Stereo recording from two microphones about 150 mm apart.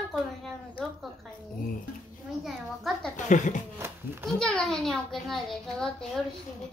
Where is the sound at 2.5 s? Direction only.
Centre (ahead or behind).